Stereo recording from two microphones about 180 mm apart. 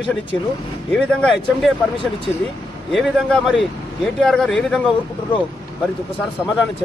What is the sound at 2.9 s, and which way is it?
Speech, centre (ahead or behind).